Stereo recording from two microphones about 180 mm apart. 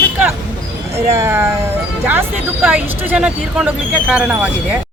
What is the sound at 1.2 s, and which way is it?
Speech, 15° right (ahead or behind).